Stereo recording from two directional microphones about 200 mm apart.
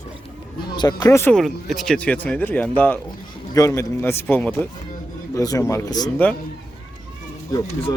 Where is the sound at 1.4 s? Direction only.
Centre (ahead or behind); by 6.1 s 20° left (ahead or behind).